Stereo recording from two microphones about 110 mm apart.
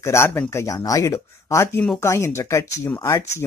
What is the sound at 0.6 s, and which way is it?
Speech, 30° left (ahead or behind).